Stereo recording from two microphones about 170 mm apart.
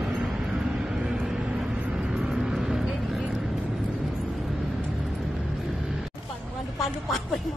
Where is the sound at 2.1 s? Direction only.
5° right (ahead or behind).